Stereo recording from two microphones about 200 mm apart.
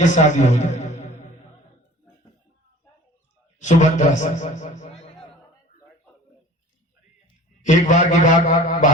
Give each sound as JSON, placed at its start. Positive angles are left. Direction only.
{"t": 0.0, "sound": "a man's voice", "side_deg": 35}
{"t": 3.6, "sound": "a man's voice", "side_deg": 35}
{"t": 7.6, "sound": "a man's voice", "side_deg": 40}